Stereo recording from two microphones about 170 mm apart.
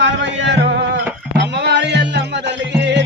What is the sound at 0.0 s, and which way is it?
Music, 90° right.